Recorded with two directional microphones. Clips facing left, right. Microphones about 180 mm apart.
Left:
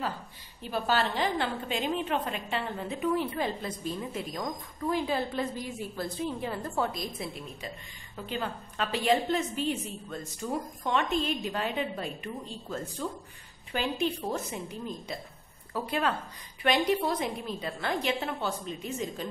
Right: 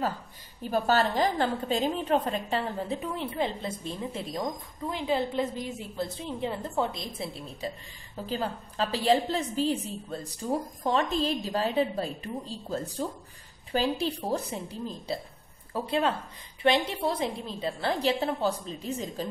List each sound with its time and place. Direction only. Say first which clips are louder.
0.6 s a woman's voice: right 4 dB; 45° right (ahead or behind)